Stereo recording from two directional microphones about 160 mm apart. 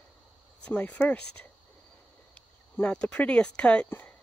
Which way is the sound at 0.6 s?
10° left (ahead or behind).